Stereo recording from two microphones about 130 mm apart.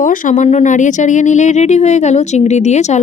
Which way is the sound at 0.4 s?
65° left (ahead or behind).